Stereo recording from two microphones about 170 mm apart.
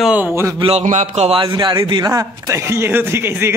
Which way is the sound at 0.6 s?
35° right (ahead or behind).